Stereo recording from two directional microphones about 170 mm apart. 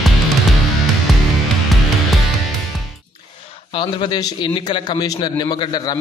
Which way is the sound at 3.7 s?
25° left (ahead or behind).